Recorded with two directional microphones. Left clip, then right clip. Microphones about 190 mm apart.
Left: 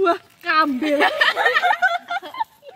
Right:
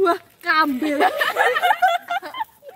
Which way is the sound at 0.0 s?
30° left (ahead or behind).